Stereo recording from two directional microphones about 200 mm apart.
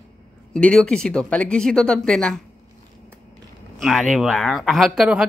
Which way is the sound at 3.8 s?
Centre (ahead or behind).